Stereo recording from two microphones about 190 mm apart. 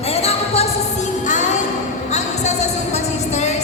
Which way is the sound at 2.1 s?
35° left (ahead or behind).